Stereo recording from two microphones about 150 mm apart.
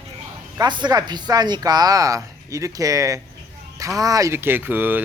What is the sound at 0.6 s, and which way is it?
Speech, 30° right (ahead or behind).